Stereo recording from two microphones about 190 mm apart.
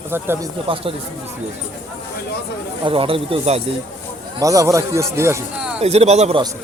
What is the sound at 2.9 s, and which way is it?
Speech, 30° right (ahead or behind).